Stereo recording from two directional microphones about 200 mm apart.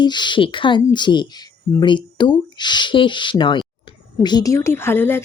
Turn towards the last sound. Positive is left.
turn(degrees=10)  # may be behind; listen again after turning